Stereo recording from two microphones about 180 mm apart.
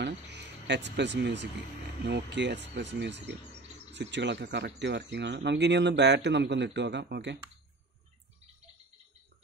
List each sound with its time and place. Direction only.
0.0 s speech: 70° right (ahead or behind)